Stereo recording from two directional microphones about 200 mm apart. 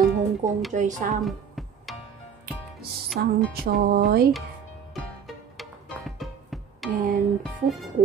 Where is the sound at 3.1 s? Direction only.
50° right (ahead or behind).